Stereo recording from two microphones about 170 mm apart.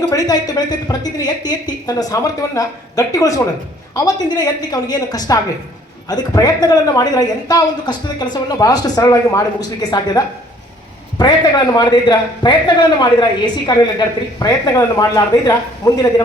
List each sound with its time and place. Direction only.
0.1 s a man's voice: 20° left (ahead or behind)